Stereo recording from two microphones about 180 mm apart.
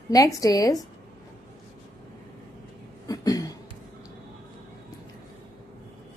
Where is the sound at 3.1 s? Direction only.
20° left (ahead or behind).